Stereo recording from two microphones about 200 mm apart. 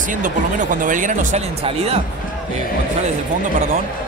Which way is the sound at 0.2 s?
40° right (ahead or behind).